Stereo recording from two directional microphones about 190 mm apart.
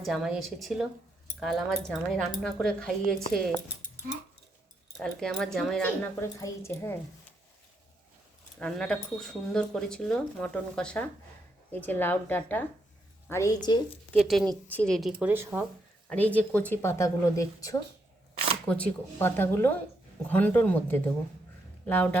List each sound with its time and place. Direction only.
0.0 s speech: centre (ahead or behind)
4.9 s speech: centre (ahead or behind)
8.5 s speech: 5° left (ahead or behind); by 13.7 s 20° left (ahead or behind)
14.1 s speech: centre (ahead or behind)
16.0 s speech: 10° left (ahead or behind)